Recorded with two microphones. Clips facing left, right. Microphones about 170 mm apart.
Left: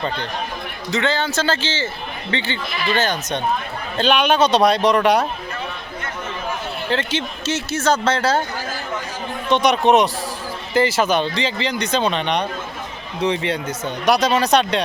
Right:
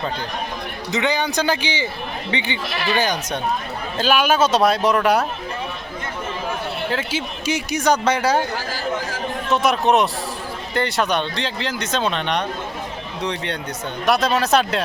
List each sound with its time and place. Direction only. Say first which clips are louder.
0.9 s speech: even; 15° right (ahead or behind)
6.9 s speech: left 2 dB; 5° right (ahead or behind)
9.5 s speech: left 3 dB; 5° right (ahead or behind)